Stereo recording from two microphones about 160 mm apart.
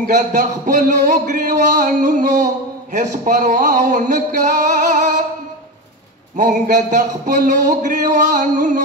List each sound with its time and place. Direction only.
0.0 s speech: 55° right (ahead or behind)
6.3 s speech: 50° right (ahead or behind)